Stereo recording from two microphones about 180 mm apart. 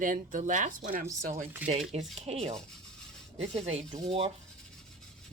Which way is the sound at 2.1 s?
35° right (ahead or behind).